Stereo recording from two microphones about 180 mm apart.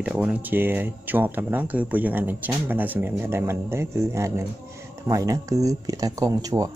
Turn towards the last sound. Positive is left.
turn(degrees=-20)  # may be behind; listen again after turning